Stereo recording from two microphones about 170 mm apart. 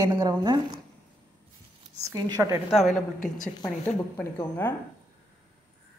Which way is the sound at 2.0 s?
20° right (ahead or behind).